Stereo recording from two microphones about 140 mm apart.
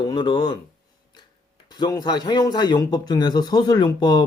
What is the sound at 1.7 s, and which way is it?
Speech, 30° left (ahead or behind).